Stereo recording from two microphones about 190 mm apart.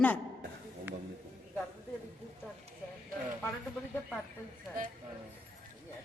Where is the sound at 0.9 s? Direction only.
10° right (ahead or behind).